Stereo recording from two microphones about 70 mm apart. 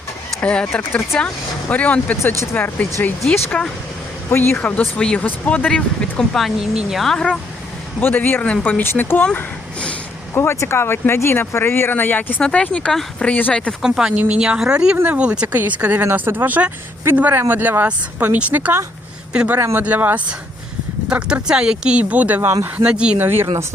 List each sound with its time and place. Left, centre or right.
0.4 s speech: centre
1.7 s speech: left
4.3 s speech: left
4.5 s speech: centre
5.2 s speech: left
5.6 s speech: centre
8.0 s speech: left
8.8 s speech: left
10.3 s speech: left
12.4 s speech: centre
13.8 s a man's voice: centre
19.7 s speech: right
23.1 s speech: right